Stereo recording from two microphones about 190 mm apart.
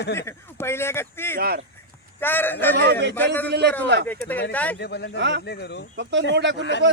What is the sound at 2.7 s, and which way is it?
A man's voice, 60° right (ahead or behind).